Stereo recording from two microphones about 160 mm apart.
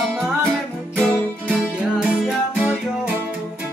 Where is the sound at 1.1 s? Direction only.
5° left (ahead or behind); by 3.2 s 10° right (ahead or behind).